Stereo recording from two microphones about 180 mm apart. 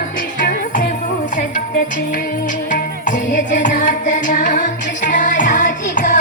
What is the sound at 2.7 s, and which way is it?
Music, 45° left (ahead or behind).